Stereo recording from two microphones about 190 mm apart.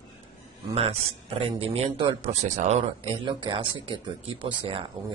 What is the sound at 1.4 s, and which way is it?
Speech, 30° right (ahead or behind).